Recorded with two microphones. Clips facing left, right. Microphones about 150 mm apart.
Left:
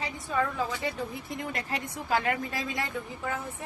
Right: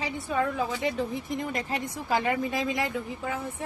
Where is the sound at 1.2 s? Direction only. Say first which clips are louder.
Right 4 dB; 20° right (ahead or behind).